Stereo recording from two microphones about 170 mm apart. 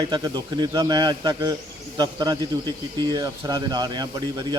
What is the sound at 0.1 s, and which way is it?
Speech, 25° right (ahead or behind).